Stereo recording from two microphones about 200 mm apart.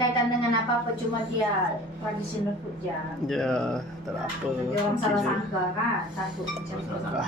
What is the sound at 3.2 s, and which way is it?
Speech, centre (ahead or behind).